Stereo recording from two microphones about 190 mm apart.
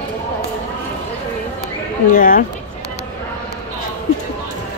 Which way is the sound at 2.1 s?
45° left (ahead or behind).